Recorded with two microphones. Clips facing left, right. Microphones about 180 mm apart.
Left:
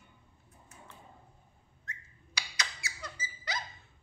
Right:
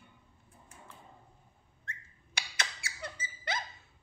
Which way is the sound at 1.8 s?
55° right (ahead or behind).